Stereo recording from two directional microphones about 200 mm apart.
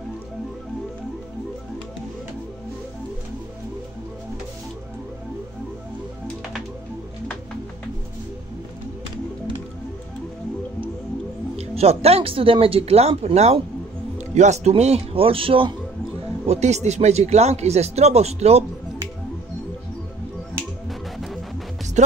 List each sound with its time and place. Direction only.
11.5 s a man's voice: 30° right (ahead or behind)
21.2 s music: centre (ahead or behind)
22.0 s speech: 35° right (ahead or behind)